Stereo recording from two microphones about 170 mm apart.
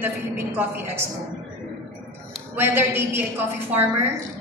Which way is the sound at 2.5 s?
10° right (ahead or behind).